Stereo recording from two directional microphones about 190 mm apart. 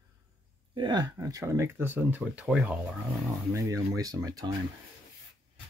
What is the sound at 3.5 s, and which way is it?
Speech, 15° right (ahead or behind).